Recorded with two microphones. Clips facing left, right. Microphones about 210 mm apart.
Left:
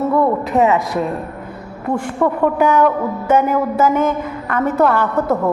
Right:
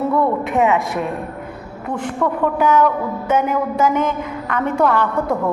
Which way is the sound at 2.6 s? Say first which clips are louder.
Even; 10° left (ahead or behind).